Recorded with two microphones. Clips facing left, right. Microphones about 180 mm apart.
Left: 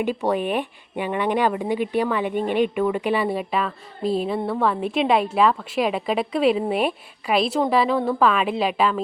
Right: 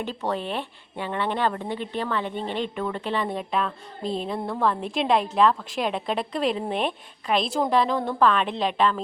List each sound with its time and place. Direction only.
0.0 s speech: 10° left (ahead or behind)